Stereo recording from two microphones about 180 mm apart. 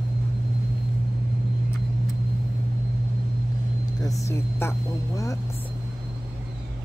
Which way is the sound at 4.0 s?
20° left (ahead or behind).